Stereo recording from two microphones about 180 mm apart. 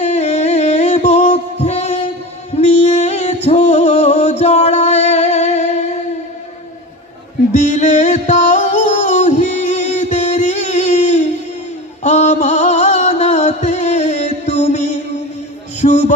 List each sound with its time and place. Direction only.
0.0 s music: 40° left (ahead or behind)
7.5 s music: 40° left (ahead or behind)
15.8 s a sound: 40° left (ahead or behind)